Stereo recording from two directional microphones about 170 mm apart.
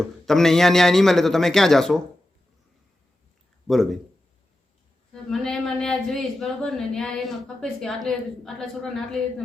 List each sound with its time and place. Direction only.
0.0 s speech: 5° left (ahead or behind)
5.3 s speech: centre (ahead or behind)